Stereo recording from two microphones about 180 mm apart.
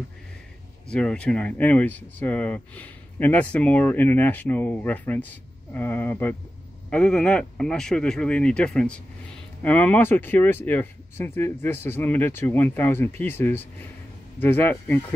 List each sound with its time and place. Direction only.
0.8 s speech: 5° left (ahead or behind)